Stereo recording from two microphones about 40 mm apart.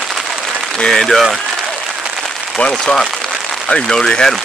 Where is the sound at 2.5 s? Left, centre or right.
Left.